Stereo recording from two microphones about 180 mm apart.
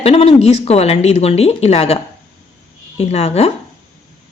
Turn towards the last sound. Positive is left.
turn(degrees=35)  # may be behind; listen again after turning